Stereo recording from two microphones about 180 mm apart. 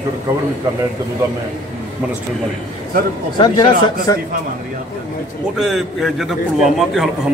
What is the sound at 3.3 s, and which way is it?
Speech, 25° left (ahead or behind).